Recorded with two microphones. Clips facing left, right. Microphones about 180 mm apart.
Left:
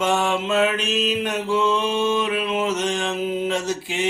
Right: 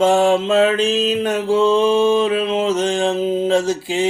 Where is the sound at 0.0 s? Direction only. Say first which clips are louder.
Right 7 dB; 30° right (ahead or behind).